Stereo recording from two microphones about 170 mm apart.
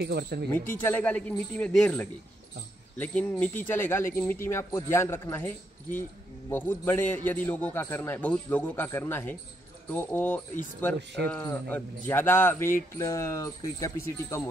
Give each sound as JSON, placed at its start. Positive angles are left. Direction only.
{"t": 0.0, "sound": "speech", "side_deg": -70}
{"t": 0.5, "sound": "speech", "side_deg": 10}